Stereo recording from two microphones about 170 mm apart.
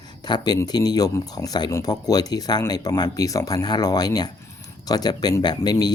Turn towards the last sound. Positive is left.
turn(degrees=25)  # may be behind; listen again after turning